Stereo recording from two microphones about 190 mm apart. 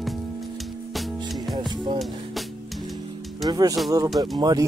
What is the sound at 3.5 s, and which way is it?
Speech, 20° right (ahead or behind).